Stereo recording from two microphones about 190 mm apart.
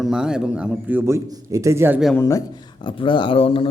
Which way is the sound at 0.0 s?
5° right (ahead or behind).